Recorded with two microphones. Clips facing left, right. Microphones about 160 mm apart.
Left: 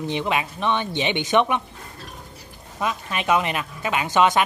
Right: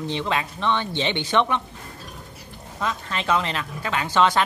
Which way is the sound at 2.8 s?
15° left (ahead or behind).